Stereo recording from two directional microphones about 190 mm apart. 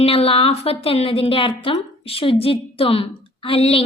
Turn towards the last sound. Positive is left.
turn(degrees=30)  # may be behind; listen again after turning